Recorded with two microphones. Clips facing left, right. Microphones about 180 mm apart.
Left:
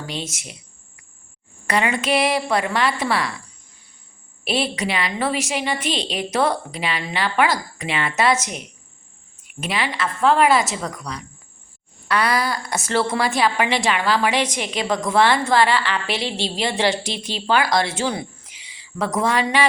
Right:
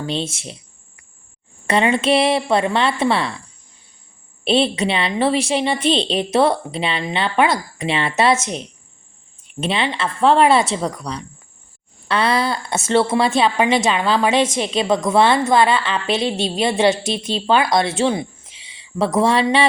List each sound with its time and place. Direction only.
0.0 s a woman's voice: 25° right (ahead or behind)
1.6 s a woman's voice: 25° right (ahead or behind)
4.4 s a woman's voice: 25° right (ahead or behind)